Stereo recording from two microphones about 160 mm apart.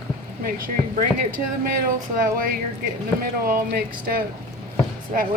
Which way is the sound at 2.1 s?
60° right (ahead or behind).